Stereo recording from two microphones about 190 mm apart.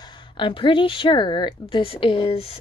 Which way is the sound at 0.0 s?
25° left (ahead or behind).